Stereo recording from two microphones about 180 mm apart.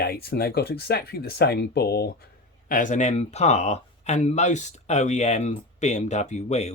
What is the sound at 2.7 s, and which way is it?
Speech, 45° left (ahead or behind).